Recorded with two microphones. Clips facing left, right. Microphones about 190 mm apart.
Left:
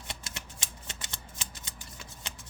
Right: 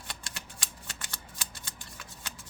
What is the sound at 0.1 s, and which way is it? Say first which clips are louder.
Shuffling cards: left 2 dB; 25° left (ahead or behind).